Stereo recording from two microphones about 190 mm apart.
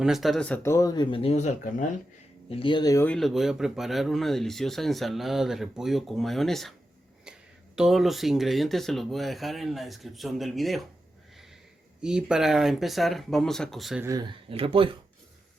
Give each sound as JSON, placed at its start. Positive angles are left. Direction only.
{"t": 0.0, "sound": "speech", "side_deg": 0}
{"t": 2.5, "sound": "speech", "side_deg": 30}
{"t": 3.2, "sound": "speech", "side_deg": 0}
{"t": 7.3, "sound": "a sound", "side_deg": -5}
{"t": 7.8, "sound": "speech", "side_deg": 0}
{"t": 12.0, "sound": "speech", "side_deg": -5}
{"t": 14.0, "sound": "speech", "side_deg": -20}